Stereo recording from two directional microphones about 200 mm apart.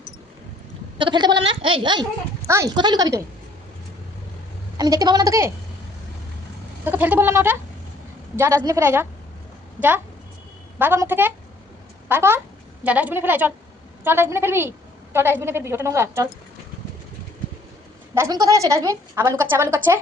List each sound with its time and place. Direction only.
0.9 s speech: 25° right (ahead or behind)
4.8 s speech: 20° right (ahead or behind)
6.8 s a woman's voice: 10° right (ahead or behind)
10.8 s a woman's voice: 10° right (ahead or behind)
18.1 s a woman's voice: 15° right (ahead or behind)